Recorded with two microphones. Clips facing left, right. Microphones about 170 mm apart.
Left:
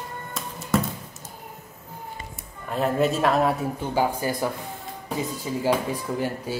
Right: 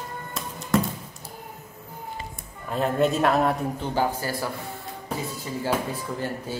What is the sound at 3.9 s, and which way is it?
Speech, 15° left (ahead or behind).